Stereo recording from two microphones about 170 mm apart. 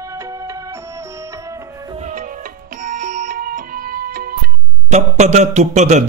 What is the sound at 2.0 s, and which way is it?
Music, 50° right (ahead or behind).